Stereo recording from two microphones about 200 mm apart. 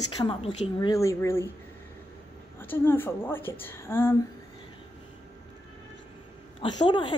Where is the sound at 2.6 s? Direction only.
10° left (ahead or behind).